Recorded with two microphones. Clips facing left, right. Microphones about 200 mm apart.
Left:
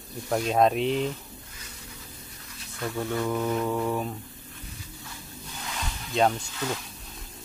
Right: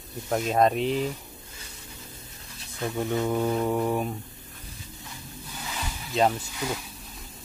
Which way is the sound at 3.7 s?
15° right (ahead or behind).